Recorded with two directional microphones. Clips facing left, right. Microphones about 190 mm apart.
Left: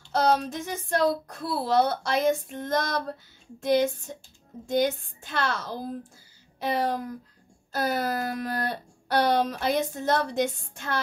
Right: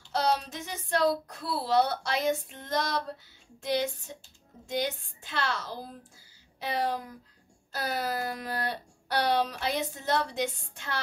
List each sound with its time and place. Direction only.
0.1 s speech: 50° left (ahead or behind)